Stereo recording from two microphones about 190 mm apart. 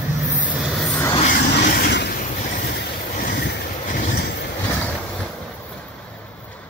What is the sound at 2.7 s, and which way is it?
Vehicle, 50° left (ahead or behind).